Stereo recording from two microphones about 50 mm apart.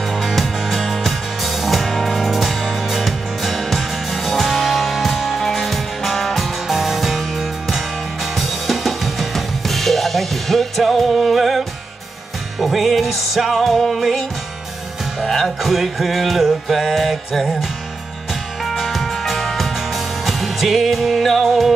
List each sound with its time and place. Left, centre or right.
0.1 s music: centre